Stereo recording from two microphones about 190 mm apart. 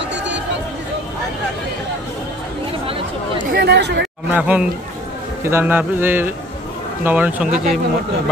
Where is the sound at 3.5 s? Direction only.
60° right (ahead or behind).